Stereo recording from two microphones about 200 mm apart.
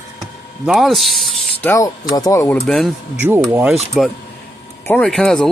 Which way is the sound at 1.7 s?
15° left (ahead or behind).